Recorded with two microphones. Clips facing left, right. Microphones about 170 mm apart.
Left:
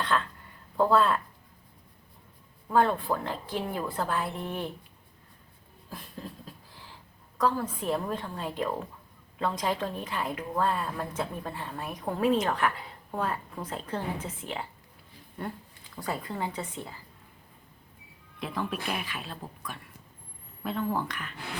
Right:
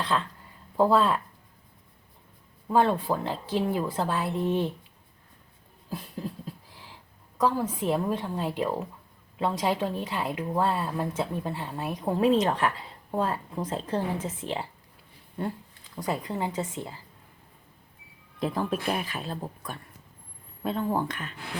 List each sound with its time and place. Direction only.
0.1 s speech: 20° right (ahead or behind)
2.6 s speech: 25° right (ahead or behind)
6.1 s a sound: 10° right (ahead or behind)
7.3 s speech: 10° right (ahead or behind); by 14.7 s 30° right (ahead or behind)
16.0 s speech: 15° right (ahead or behind)
18.3 s speech: 40° right (ahead or behind)
20.6 s speech: 25° right (ahead or behind)